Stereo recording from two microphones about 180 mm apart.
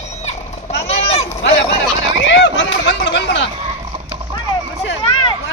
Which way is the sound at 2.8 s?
75° left (ahead or behind).